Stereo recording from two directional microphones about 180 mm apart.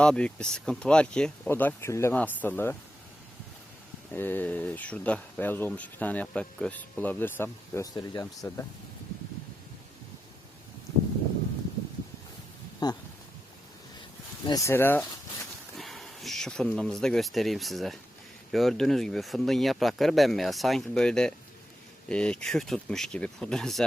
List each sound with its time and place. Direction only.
0.0 s speech: 5° left (ahead or behind)
4.1 s speech: 10° left (ahead or behind)
12.8 s speech: 20° left (ahead or behind)
14.4 s speech: 20° left (ahead or behind)
15.7 s speech: centre (ahead or behind)